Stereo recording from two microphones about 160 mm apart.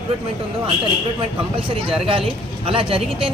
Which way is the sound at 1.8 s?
35° right (ahead or behind).